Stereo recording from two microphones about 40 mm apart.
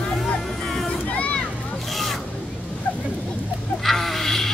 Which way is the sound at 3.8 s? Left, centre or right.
Centre.